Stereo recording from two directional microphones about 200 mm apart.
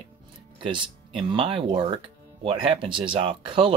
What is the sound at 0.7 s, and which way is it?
Speech, 25° right (ahead or behind).